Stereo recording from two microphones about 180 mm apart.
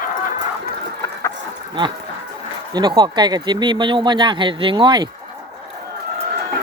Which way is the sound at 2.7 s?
25° right (ahead or behind).